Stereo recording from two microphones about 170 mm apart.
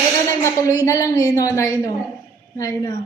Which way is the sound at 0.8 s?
20° left (ahead or behind).